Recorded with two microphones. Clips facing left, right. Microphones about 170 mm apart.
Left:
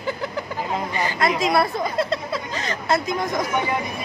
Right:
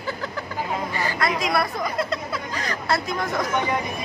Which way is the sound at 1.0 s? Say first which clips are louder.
Left 4 dB; 25° left (ahead or behind).